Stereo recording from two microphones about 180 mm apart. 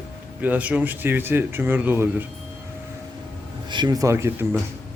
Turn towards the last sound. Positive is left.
turn(degrees=-15)  # may be behind; listen again after turning